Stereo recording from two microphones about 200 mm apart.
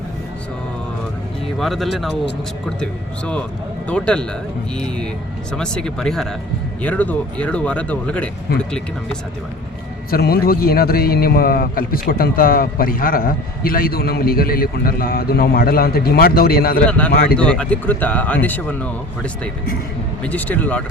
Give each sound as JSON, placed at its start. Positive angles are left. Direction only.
{"t": 1.5, "sound": "speech", "side_deg": 0}
{"t": 5.5, "sound": "speech", "side_deg": 5}
{"t": 8.5, "sound": "a man's voice", "side_deg": 50}
{"t": 10.1, "sound": "a man's voice", "side_deg": 50}
{"t": 16.8, "sound": "speech", "side_deg": 5}